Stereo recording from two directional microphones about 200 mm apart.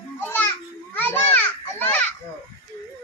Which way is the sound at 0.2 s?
10° left (ahead or behind).